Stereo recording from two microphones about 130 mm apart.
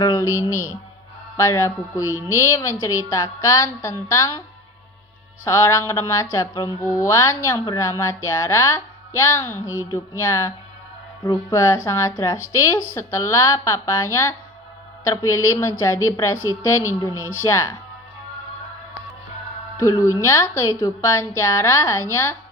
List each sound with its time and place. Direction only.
0.0 s speech: 25° left (ahead or behind)
5.5 s speech: 20° left (ahead or behind)
19.8 s speech: 25° left (ahead or behind)